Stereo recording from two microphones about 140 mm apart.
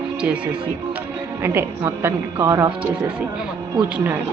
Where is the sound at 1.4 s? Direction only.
15° right (ahead or behind).